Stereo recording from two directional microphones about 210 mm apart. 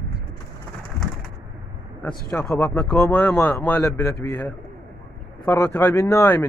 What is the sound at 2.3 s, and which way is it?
Speech, 10° left (ahead or behind).